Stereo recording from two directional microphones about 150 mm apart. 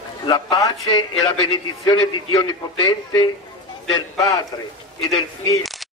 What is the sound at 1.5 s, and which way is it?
A man's voice, 35° left (ahead or behind).